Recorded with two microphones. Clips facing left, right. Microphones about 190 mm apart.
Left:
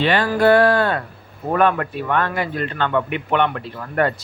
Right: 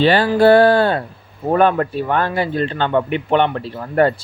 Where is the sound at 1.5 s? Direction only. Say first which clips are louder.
Right 3 dB; 30° right (ahead or behind).